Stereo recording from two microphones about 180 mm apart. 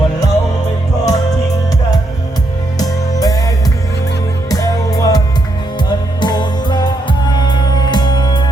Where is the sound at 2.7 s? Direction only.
20° left (ahead or behind).